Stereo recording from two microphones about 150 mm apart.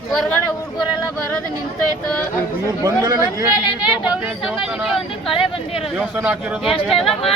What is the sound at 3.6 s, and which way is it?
Speech, 35° left (ahead or behind).